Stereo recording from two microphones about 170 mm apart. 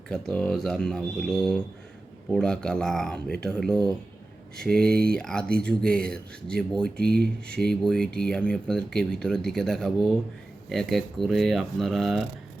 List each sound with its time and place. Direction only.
0.1 s speech: 5° left (ahead or behind)
4.9 s speech: 65° right (ahead or behind)
5.1 s speech: 5° left (ahead or behind)
7.0 s speech: 65° right (ahead or behind)
7.7 s speech: 5° left (ahead or behind)